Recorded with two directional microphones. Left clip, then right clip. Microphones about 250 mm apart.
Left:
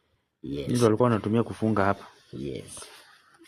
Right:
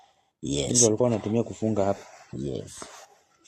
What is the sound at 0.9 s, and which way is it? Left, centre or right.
Speech, left.